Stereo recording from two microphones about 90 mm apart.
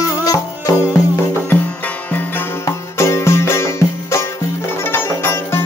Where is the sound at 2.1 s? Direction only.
20° left (ahead or behind).